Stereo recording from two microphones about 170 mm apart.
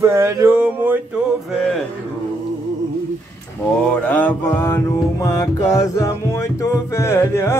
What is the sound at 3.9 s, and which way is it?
Mantra, 10° left (ahead or behind).